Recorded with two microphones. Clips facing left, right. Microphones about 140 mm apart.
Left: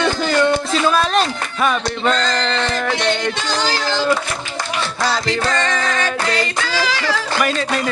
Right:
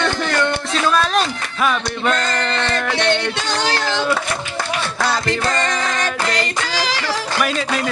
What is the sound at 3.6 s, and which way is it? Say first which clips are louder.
Speech: right 2 dB; 60° right (ahead or behind).